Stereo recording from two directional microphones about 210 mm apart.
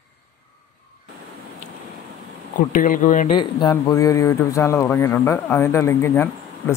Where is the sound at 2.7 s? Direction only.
40° left (ahead or behind).